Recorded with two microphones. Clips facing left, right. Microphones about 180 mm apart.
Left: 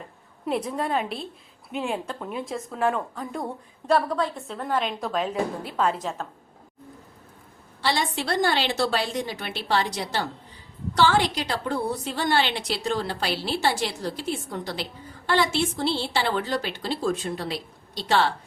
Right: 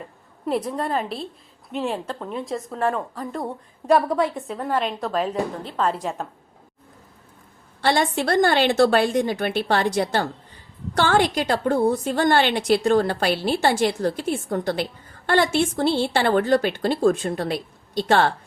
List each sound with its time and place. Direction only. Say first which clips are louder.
0.4 s a woman's voice: right 2 dB; centre (ahead or behind)
3.8 s a woman's voice: right 4 dB; 20° right (ahead or behind)
4.4 s a woman's voice: right 3 dB; 5° right (ahead or behind)
7.8 s a woman's voice: right 5 dB; 50° right (ahead or behind)